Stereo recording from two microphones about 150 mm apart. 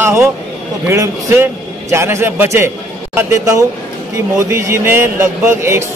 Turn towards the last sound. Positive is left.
turn(degrees=-15)  # may be behind; listen again after turning